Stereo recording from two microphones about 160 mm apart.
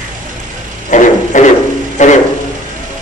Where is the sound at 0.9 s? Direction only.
50° left (ahead or behind).